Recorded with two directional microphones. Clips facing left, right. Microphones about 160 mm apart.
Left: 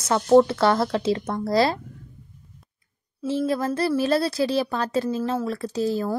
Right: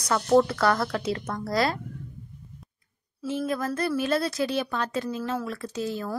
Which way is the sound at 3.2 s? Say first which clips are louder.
Left 4 dB; 30° left (ahead or behind).